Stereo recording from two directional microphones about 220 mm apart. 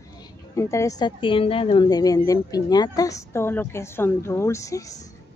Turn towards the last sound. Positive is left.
turn(degrees=15)  # may be behind; listen again after turning